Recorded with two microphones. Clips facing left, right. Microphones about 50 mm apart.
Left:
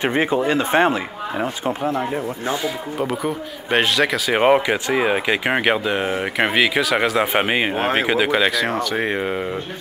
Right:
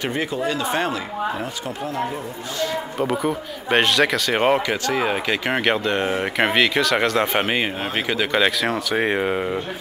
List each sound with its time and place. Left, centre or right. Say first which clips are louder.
0.0 s speech: left 5 dB; left
2.6 s speech: even; centre
8.4 s speech: left 1 dB; centre